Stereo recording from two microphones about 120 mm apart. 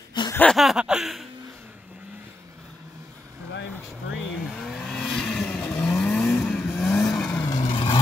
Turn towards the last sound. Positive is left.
turn(degrees=45)  # may be behind; listen again after turning